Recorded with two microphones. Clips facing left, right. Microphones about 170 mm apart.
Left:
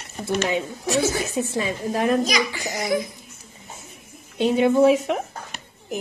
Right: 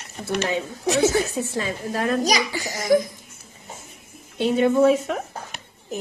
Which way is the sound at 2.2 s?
35° right (ahead or behind).